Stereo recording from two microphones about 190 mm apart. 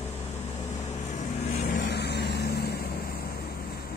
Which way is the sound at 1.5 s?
50° left (ahead or behind).